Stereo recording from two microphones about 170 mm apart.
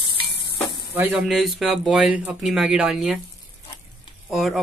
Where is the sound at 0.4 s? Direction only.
30° left (ahead or behind).